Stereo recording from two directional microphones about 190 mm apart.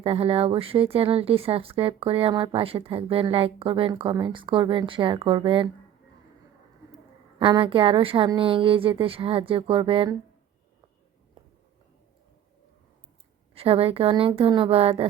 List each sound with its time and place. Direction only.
0.0 s speech: 30° right (ahead or behind)
7.3 s speech: 25° right (ahead or behind)
13.5 s speech: 30° right (ahead or behind)